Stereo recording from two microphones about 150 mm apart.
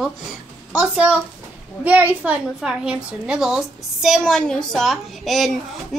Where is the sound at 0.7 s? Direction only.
10° right (ahead or behind).